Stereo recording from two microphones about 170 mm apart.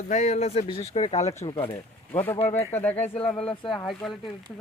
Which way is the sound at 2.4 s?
40° left (ahead or behind).